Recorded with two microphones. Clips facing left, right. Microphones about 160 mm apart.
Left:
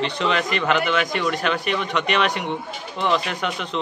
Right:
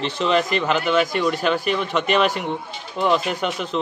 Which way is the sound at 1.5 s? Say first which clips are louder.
Right 2 dB; 40° right (ahead or behind).